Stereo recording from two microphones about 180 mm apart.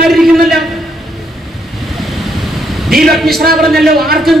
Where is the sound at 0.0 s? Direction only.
Centre (ahead or behind).